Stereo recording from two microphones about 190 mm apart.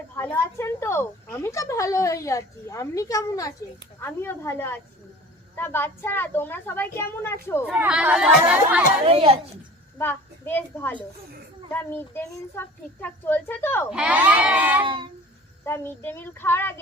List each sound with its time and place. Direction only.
0.2 s speech: 15° left (ahead or behind)
7.6 s speech: 5° right (ahead or behind)
9.0 s a child's voice: 30° right (ahead or behind)
10.0 s a child's voice: 10° left (ahead or behind)
13.9 s speech: 5° right (ahead or behind)
14.8 s a child's voice: 25° right (ahead or behind)
15.6 s speech: 15° left (ahead or behind)